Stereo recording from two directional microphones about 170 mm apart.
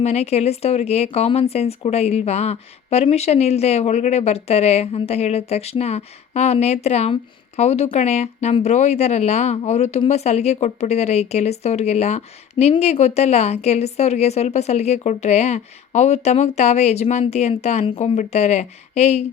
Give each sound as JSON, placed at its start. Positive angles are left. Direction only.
{"t": 0.0, "sound": "speech", "side_deg": 40}